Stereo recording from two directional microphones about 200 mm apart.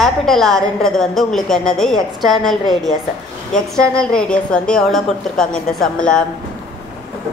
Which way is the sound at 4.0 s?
5° left (ahead or behind).